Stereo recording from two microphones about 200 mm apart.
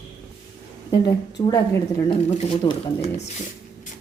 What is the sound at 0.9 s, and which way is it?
Speech, 15° left (ahead or behind).